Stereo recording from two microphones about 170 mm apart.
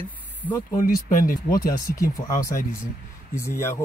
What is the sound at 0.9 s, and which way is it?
Speech, 55° left (ahead or behind).